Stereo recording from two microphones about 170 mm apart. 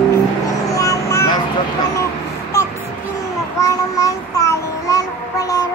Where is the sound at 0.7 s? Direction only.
20° left (ahead or behind).